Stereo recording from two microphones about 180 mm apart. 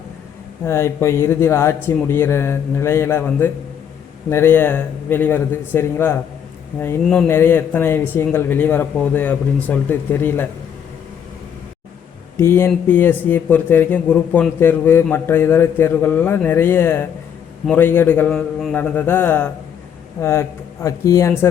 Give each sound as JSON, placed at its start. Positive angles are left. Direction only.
{"t": 0.6, "sound": "a man's voice", "side_deg": 15}
{"t": 12.4, "sound": "a man's voice", "side_deg": 15}